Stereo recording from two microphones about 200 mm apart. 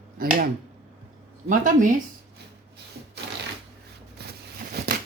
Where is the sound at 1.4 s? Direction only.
40° right (ahead or behind).